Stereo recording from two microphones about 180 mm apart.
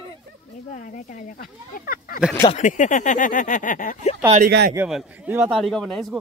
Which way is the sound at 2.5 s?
45° left (ahead or behind).